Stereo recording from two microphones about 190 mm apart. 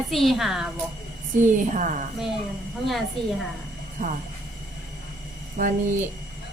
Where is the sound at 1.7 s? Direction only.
40° right (ahead or behind).